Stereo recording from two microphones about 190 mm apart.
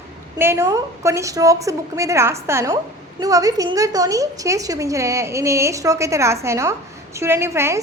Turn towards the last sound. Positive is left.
turn(degrees=-15)  # may be behind; listen again after turning